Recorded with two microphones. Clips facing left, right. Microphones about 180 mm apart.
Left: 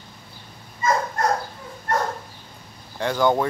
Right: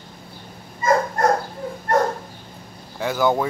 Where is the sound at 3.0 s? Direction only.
5° right (ahead or behind).